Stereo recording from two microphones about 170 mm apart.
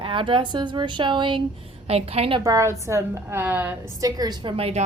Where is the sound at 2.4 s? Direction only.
20° right (ahead or behind).